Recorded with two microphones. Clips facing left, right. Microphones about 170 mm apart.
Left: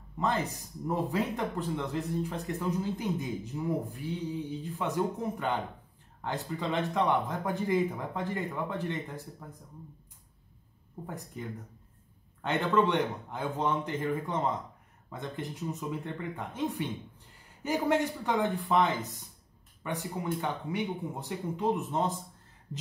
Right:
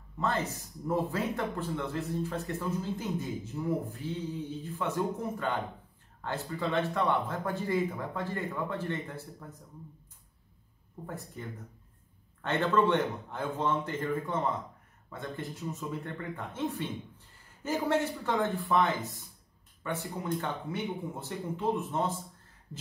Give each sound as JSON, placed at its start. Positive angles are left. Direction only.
{"t": 0.2, "sound": "speech", "side_deg": 15}
{"t": 11.1, "sound": "speech", "side_deg": 15}